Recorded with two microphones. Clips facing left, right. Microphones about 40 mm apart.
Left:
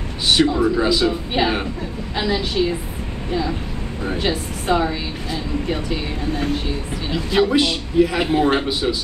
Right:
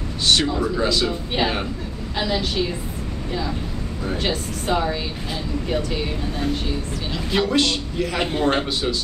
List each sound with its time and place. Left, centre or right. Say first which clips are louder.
0.3 s speech: left 4 dB; centre
4.1 s speech: left 2 dB; centre
7.1 s a man's voice: left 4 dB; centre